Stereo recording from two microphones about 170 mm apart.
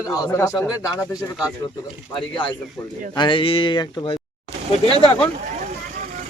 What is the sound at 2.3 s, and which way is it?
Speech, 30° left (ahead or behind).